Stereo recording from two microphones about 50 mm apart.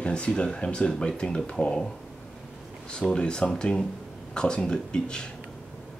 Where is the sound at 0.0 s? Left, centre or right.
Left.